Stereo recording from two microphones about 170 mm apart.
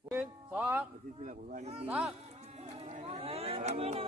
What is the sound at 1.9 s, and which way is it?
Speech, 10° right (ahead or behind).